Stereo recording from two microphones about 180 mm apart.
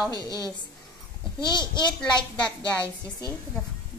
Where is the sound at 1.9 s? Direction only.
5° left (ahead or behind).